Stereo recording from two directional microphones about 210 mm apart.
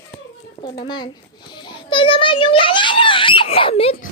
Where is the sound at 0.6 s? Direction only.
20° left (ahead or behind).